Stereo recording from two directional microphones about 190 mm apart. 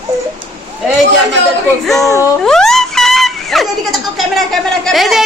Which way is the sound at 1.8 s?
Centre (ahead or behind).